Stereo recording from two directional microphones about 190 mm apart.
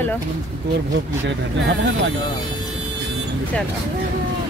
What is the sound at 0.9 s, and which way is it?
Speech, 75° right (ahead or behind).